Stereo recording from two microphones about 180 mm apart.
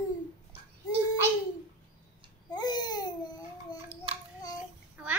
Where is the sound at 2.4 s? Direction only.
20° left (ahead or behind).